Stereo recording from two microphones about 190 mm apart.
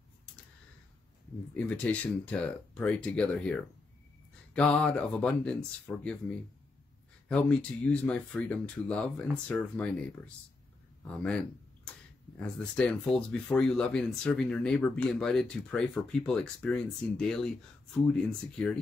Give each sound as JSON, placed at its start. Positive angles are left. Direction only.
{"t": 1.5, "sound": "speech", "side_deg": 5}